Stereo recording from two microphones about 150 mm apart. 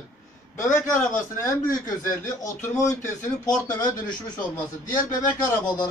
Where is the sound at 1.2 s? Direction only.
20° left (ahead or behind).